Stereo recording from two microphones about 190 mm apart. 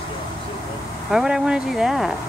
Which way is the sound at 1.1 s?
5° right (ahead or behind).